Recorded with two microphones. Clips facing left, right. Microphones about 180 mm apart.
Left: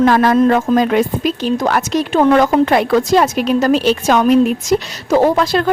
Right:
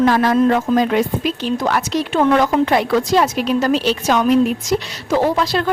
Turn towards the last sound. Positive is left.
turn(degrees=50)  # may be behind; listen again after turning